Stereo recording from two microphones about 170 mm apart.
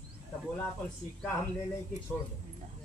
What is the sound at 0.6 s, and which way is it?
Speech, 10° left (ahead or behind).